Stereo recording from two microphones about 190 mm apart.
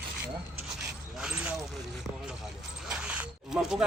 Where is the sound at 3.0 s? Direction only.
5° right (ahead or behind).